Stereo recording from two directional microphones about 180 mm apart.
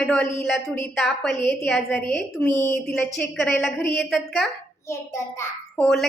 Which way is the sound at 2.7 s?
5° left (ahead or behind).